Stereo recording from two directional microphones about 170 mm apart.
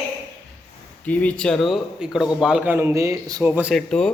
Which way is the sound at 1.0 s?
10° left (ahead or behind).